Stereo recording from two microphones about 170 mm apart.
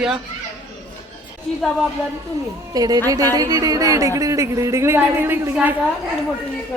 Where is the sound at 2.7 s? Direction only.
20° right (ahead or behind).